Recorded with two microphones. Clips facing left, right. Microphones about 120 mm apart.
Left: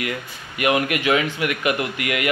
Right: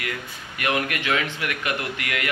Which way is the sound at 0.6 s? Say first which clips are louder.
Left 5 dB; 10° left (ahead or behind).